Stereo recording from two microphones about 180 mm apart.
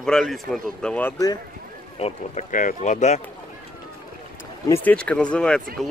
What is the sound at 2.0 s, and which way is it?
Speech, 45° left (ahead or behind).